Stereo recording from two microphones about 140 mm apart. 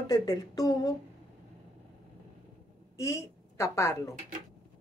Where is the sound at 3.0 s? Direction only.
20° left (ahead or behind).